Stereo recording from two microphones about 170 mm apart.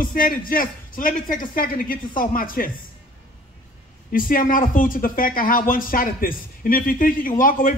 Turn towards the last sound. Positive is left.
turn(degrees=55)  # may be behind; listen again after turning